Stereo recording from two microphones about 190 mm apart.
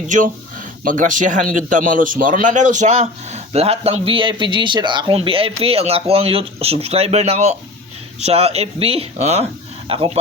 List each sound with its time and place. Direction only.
0.9 s a man's voice: 45° right (ahead or behind)